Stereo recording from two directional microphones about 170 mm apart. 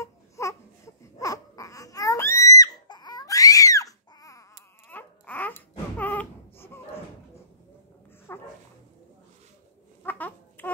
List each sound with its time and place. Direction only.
0.0 s baby cry: 20° left (ahead or behind)
4.8 s a sound: 10° left (ahead or behind)
8.3 s dog: 10° left (ahead or behind)
10.0 s babbling: 10° left (ahead or behind)